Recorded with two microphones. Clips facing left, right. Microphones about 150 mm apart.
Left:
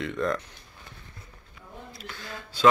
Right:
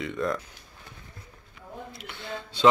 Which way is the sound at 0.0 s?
Centre (ahead or behind).